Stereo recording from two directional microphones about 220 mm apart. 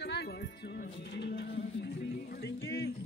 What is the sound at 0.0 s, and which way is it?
Music, 50° left (ahead or behind).